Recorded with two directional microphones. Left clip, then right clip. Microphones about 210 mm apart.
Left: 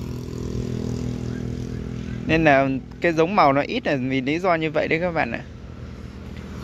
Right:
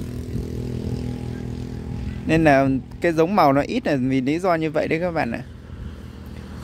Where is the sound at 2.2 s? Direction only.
25° right (ahead or behind).